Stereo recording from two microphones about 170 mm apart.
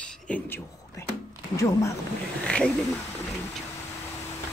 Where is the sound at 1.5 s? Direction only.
20° left (ahead or behind).